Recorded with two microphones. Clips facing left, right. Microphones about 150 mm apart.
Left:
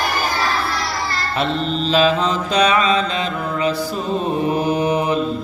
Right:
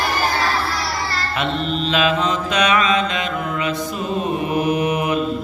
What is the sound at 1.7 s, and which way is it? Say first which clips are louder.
Mantra: left 3 dB; 35° left (ahead or behind).